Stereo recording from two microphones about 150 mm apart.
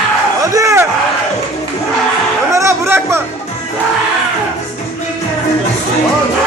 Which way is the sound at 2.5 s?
20° right (ahead or behind).